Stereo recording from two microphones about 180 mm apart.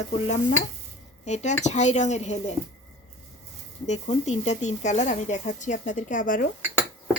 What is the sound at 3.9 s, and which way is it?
Speech, 40° left (ahead or behind).